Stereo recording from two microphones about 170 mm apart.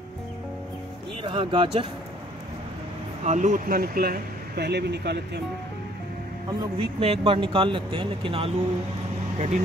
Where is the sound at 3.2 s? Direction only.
45° right (ahead or behind); by 5.4 s 75° right (ahead or behind).